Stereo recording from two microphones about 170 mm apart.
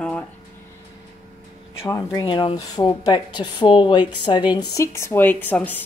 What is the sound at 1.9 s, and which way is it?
Speech, 20° left (ahead or behind).